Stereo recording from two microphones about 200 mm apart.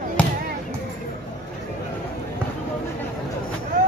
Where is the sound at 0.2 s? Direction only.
5° left (ahead or behind).